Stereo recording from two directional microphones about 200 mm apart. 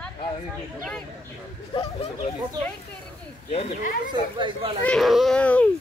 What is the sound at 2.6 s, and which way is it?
Speech, 20° right (ahead or behind).